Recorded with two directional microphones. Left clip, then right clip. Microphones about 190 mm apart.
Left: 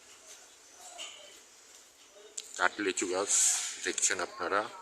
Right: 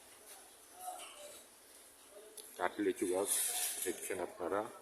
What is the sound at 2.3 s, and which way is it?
Speech, 5° right (ahead or behind).